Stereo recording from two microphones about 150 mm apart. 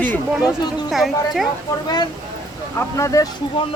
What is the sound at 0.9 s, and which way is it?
Speech, centre (ahead or behind).